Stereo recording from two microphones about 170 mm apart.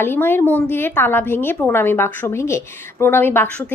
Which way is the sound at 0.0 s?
15° left (ahead or behind).